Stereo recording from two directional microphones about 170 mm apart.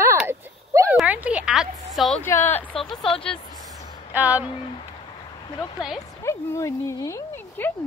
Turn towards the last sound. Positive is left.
turn(degrees=15)  # may be behind; listen again after turning